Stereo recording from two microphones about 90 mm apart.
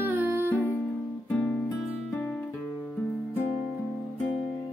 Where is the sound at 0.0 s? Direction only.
25° right (ahead or behind).